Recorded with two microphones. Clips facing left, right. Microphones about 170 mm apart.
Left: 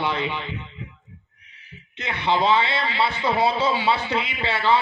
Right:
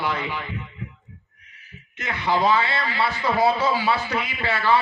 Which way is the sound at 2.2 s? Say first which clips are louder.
Even; 25° left (ahead or behind).